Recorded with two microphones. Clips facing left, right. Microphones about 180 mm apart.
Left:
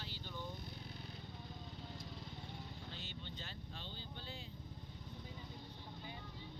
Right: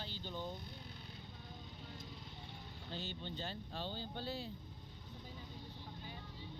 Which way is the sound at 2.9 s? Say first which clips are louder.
Right 6 dB; 35° right (ahead or behind).